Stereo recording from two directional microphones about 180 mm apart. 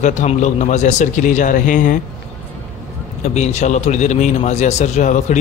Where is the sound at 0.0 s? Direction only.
40° left (ahead or behind).